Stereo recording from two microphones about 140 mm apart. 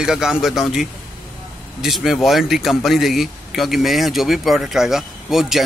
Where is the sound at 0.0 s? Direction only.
5° right (ahead or behind).